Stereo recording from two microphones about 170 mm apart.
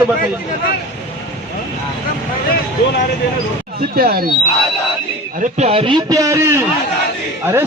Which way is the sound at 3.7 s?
65° right (ahead or behind).